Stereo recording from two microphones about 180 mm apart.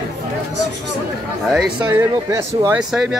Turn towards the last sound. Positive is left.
turn(degrees=-5)  # may be behind; listen again after turning